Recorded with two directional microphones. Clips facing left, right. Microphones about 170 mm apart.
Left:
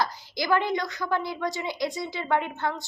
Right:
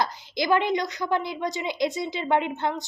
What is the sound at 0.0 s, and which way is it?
A woman's voice, 20° right (ahead or behind).